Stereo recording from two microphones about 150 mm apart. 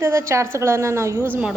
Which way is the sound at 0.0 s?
15° right (ahead or behind).